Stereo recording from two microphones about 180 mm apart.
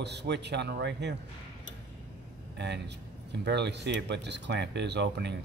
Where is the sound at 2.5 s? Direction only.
70° right (ahead or behind).